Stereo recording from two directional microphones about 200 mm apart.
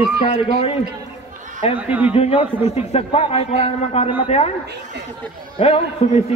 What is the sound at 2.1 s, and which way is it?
A man's voice, 30° left (ahead or behind).